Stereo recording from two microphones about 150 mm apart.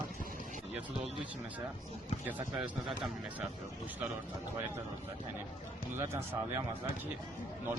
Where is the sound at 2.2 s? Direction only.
10° right (ahead or behind).